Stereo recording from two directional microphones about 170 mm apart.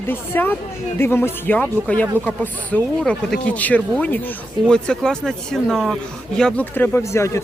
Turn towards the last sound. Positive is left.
turn(degrees=15)  # may be behind; listen again after turning